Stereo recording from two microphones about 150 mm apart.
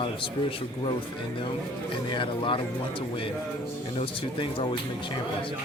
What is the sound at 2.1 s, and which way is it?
Speech, 35° left (ahead or behind).